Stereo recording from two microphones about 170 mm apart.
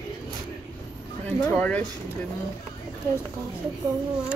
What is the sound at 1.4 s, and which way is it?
Speech, 10° left (ahead or behind).